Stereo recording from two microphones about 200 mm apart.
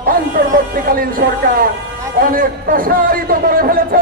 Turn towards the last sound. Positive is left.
turn(degrees=-45)  # may be behind; listen again after turning